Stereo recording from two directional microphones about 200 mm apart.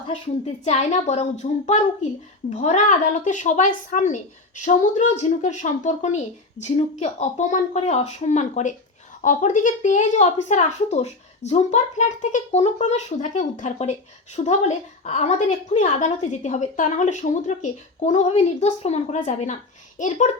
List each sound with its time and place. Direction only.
0.1 s a woman's voice: 35° left (ahead or behind)